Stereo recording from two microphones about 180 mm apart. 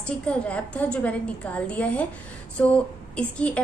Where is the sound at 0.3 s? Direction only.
5° left (ahead or behind).